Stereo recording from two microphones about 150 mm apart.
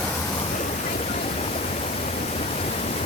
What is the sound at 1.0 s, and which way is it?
Pink noise, 50° left (ahead or behind).